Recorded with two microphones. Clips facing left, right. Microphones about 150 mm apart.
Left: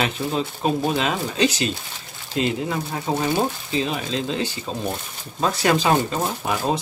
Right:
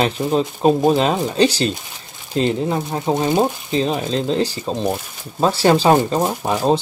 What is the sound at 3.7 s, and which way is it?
Speech, 35° right (ahead or behind).